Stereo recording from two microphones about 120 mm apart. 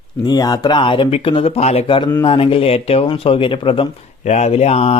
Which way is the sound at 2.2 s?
50° left (ahead or behind).